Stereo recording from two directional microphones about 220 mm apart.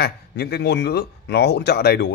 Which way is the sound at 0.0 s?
45° left (ahead or behind).